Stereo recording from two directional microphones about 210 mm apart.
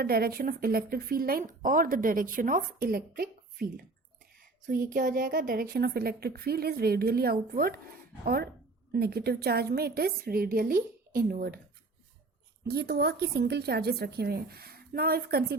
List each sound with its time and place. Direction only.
0.0 s speech: 45° right (ahead or behind)
12.6 s speech: 50° right (ahead or behind)